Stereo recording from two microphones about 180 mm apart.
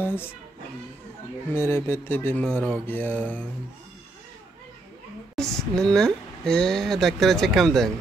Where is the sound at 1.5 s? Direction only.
15° left (ahead or behind).